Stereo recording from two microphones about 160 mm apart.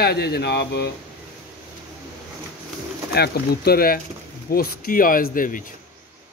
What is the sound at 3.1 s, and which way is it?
Speech, 85° left.